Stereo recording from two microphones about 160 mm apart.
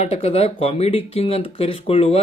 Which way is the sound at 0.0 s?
40° left (ahead or behind).